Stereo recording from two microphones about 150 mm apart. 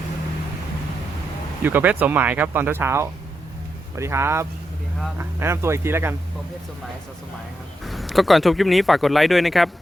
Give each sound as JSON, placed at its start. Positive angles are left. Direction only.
{"t": 1.6, "sound": "speech", "side_deg": -10}
{"t": 7.9, "sound": "speech", "side_deg": 0}